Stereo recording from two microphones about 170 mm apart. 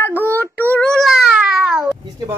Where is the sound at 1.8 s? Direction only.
15° right (ahead or behind).